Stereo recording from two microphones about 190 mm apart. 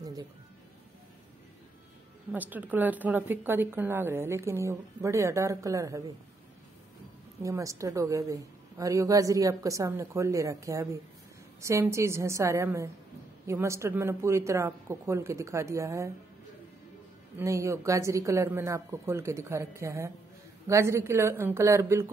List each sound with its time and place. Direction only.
2.3 s speech: 10° right (ahead or behind)
7.4 s speech: 15° right (ahead or behind)
17.4 s speech: 15° right (ahead or behind)